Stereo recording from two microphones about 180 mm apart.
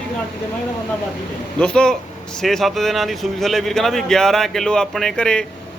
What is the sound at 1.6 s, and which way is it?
Speech, 5° left (ahead or behind).